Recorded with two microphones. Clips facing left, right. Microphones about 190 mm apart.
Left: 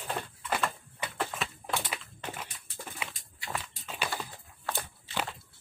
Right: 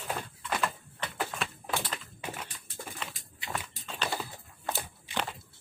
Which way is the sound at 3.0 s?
10° left (ahead or behind).